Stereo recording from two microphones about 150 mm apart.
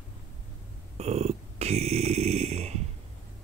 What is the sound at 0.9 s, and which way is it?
Snoring, 45° right (ahead or behind).